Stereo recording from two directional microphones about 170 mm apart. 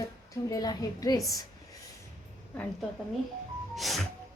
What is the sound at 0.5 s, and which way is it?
Speech, 20° left (ahead or behind).